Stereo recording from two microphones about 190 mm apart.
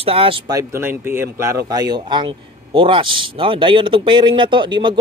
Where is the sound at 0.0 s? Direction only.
30° right (ahead or behind).